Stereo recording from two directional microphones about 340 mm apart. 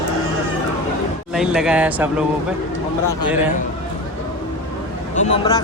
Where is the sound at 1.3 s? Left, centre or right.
Centre.